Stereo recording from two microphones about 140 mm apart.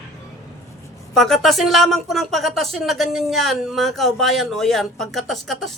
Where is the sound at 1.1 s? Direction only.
5° left (ahead or behind).